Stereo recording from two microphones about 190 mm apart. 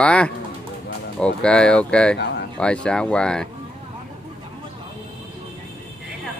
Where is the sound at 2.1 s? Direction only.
65° left (ahead or behind).